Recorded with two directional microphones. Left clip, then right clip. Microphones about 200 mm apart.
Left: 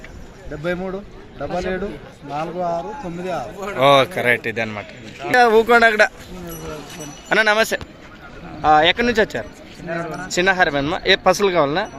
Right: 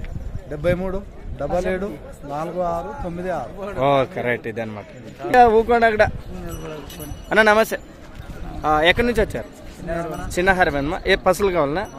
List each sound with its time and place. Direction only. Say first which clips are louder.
0.6 s speech: right 3 dB; 25° right (ahead or behind)
2.3 s speech: left 1 dB; 10° right (ahead or behind)
7.3 s speech: right 1 dB; 10° right (ahead or behind)